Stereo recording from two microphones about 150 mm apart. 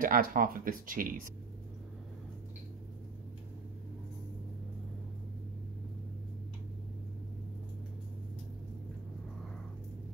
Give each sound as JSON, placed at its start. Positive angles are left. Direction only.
{"t": 0.0, "sound": "speech", "side_deg": -70}